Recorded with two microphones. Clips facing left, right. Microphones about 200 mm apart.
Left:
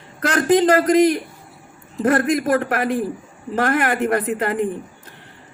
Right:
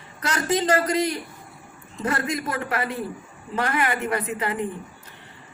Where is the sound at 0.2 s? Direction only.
55° left (ahead or behind).